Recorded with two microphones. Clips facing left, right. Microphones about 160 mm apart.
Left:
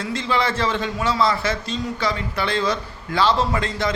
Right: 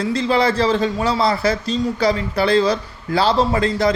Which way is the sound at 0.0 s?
35° right (ahead or behind).